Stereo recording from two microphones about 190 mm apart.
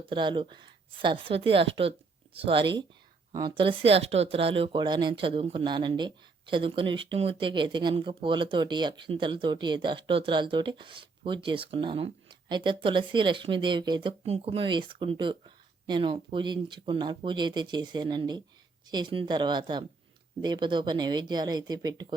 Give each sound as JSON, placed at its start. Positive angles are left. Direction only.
{"t": 0.0, "sound": "speech", "side_deg": -25}